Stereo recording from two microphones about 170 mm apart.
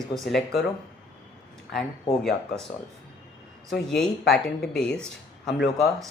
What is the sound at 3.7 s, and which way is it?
Speech, 5° left (ahead or behind).